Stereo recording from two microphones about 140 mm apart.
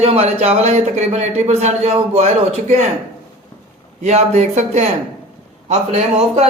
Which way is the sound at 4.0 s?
50° right (ahead or behind).